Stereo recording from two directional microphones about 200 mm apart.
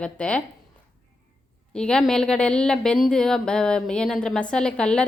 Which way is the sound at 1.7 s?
5° left (ahead or behind).